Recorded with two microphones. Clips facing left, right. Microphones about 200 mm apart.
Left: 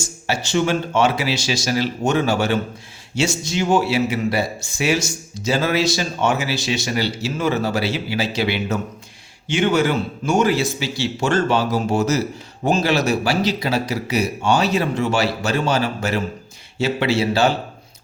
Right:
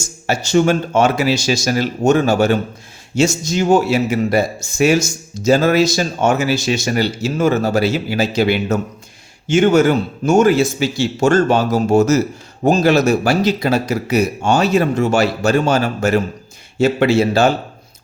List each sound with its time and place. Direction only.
0.3 s speech: 45° right (ahead or behind)